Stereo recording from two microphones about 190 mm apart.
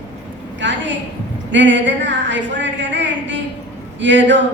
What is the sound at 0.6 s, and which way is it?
A man's voice, 70° right (ahead or behind).